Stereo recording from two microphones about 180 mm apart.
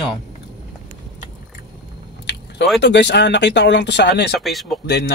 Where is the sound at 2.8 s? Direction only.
70° left (ahead or behind).